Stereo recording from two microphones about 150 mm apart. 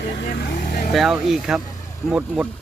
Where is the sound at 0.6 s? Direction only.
60° left (ahead or behind).